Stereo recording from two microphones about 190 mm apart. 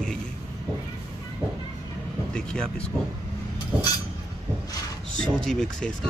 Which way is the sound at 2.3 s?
5° left (ahead or behind).